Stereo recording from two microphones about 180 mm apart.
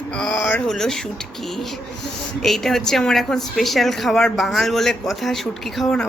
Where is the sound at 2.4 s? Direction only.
Centre (ahead or behind).